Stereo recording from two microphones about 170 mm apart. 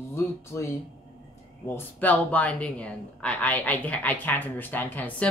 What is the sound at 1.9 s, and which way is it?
A woman's voice, 10° left (ahead or behind).